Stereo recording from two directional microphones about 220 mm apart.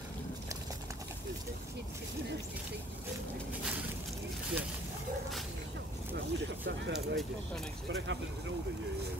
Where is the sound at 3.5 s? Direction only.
5° right (ahead or behind).